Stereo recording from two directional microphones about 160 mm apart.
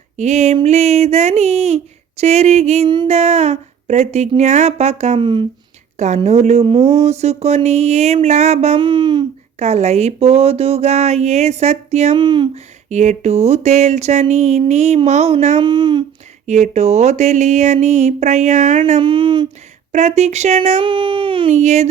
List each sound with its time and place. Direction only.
0.2 s speech: 45° right (ahead or behind)
6.0 s speech: 45° right (ahead or behind)
8.8 s speech: 30° right (ahead or behind)
9.6 s speech: 45° right (ahead or behind)
12.1 s speech: 30° right (ahead or behind)
12.5 s speech: 45° right (ahead or behind)
15.6 s speech: 30° right (ahead or behind)
16.5 s speech: 45° right (ahead or behind)
18.9 s speech: 35° right (ahead or behind)
19.9 s speech: 45° right (ahead or behind)
20.8 s speech: 30° right (ahead or behind)
21.5 s speech: 45° right (ahead or behind)